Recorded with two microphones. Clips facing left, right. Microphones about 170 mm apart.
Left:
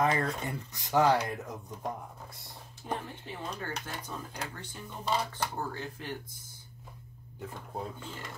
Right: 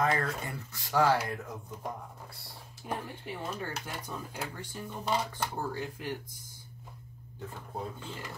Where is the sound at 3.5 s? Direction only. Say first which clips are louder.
Even; 10° right (ahead or behind).